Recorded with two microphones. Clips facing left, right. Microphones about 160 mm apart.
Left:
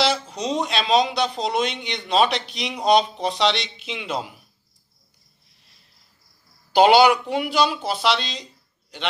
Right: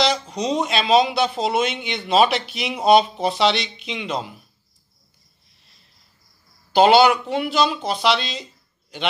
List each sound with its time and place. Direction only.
0.0 s speech: 5° left (ahead or behind)
6.7 s speech: 10° left (ahead or behind)